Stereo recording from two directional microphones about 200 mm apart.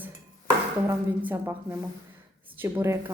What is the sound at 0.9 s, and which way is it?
A woman's voice, 10° right (ahead or behind).